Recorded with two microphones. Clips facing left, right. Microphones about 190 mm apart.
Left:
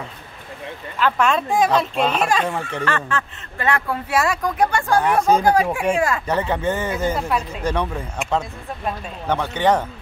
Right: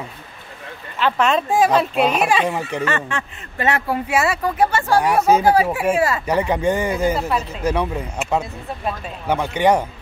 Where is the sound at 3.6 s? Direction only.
20° right (ahead or behind).